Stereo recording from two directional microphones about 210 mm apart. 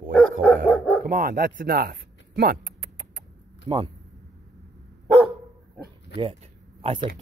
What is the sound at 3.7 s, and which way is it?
Speech, 25° right (ahead or behind).